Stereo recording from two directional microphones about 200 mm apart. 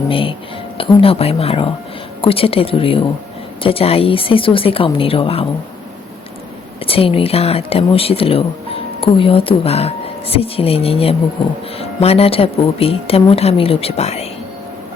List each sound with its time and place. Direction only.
0.1 s speech: 25° left (ahead or behind)
6.8 s speech: 30° left (ahead or behind)